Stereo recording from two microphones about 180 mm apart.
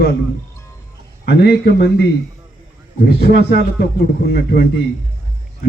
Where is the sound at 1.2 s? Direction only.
65° left (ahead or behind).